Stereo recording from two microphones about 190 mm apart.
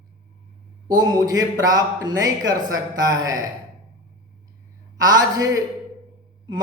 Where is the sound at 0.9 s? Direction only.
20° right (ahead or behind).